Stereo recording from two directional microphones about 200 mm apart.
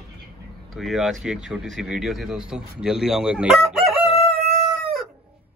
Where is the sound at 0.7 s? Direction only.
Centre (ahead or behind).